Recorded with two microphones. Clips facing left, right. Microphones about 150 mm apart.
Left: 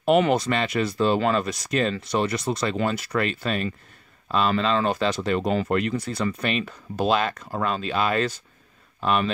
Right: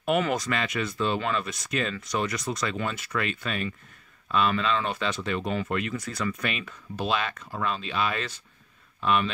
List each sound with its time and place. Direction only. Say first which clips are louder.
0.0 s speech: left 6 dB; 30° left (ahead or behind)